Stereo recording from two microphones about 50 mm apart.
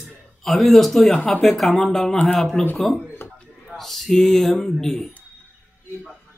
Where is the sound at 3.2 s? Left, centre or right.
Left.